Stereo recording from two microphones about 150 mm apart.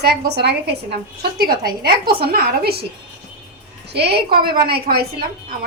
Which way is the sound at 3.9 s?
90° right.